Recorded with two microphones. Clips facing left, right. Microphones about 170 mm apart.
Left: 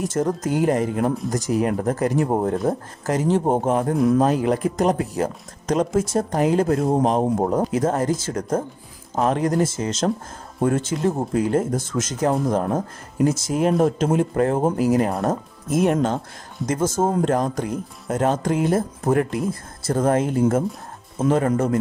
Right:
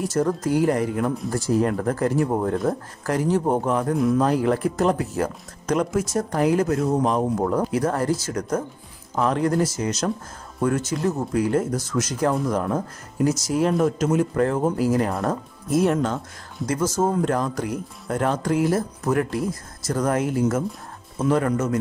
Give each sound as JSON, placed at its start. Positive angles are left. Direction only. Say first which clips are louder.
{"t": 0.0, "sound": "speech", "louder": "even", "side_deg": 20}
{"t": 17.2, "sound": "speech", "louder": "left 2 dB", "side_deg": 20}
{"t": 21.5, "sound": "a man's voice", "louder": "left 3 dB", "side_deg": 35}